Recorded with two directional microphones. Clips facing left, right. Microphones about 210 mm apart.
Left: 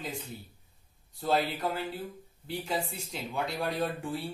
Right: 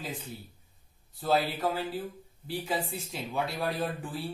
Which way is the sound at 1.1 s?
Centre (ahead or behind).